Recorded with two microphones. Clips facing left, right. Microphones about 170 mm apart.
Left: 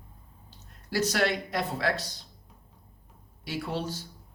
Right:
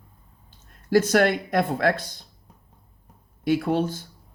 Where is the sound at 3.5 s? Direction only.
55° right (ahead or behind).